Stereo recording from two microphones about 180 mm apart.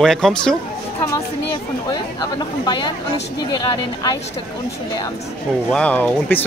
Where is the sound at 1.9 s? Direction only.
25° left (ahead or behind).